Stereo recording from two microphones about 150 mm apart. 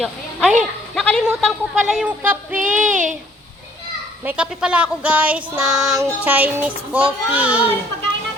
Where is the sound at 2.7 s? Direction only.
60° right (ahead or behind).